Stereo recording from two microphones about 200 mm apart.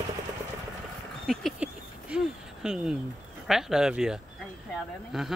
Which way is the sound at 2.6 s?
5° right (ahead or behind).